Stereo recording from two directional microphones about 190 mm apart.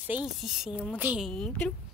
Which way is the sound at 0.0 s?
5° right (ahead or behind).